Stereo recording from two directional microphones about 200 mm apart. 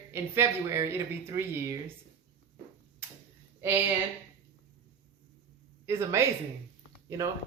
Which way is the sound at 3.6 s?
10° right (ahead or behind).